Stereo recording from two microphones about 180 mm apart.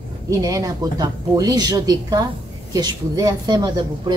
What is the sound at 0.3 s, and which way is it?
Speech, 20° right (ahead or behind).